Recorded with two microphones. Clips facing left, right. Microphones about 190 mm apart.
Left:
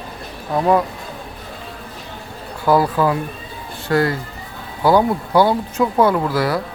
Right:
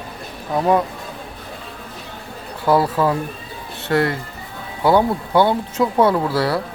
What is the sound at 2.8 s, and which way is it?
Speech, centre (ahead or behind).